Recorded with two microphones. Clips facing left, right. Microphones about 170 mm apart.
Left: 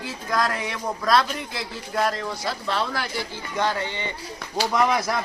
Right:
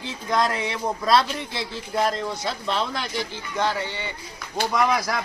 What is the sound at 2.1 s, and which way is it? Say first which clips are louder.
Speech: right 1 dB; centre (ahead or behind).